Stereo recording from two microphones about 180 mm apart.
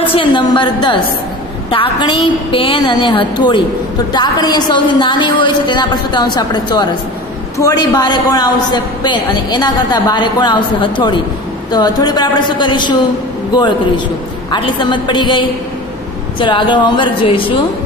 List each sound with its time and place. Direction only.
0.1 s a woman's voice: 25° left (ahead or behind)